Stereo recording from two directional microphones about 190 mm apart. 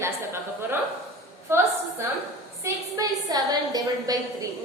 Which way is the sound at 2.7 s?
20° right (ahead or behind).